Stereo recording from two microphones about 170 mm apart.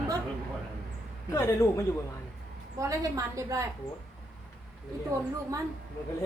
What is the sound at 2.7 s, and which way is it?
Speech, 20° right (ahead or behind).